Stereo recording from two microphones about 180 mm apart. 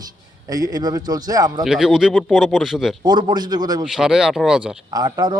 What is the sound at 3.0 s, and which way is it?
Speech, 25° right (ahead or behind).